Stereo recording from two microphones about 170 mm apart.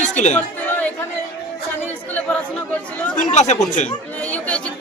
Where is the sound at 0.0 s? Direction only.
45° left (ahead or behind).